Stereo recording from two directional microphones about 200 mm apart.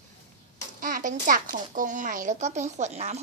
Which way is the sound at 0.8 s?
40° right (ahead or behind).